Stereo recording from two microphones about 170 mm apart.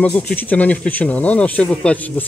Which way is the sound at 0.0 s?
10° left (ahead or behind).